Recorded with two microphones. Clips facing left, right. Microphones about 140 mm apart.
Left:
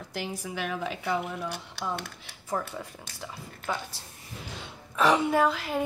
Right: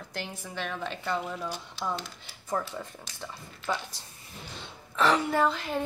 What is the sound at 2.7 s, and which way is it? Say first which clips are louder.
A woman's voice: even; 5° left (ahead or behind).